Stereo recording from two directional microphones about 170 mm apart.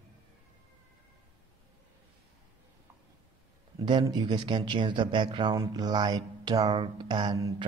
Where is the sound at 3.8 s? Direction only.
25° right (ahead or behind).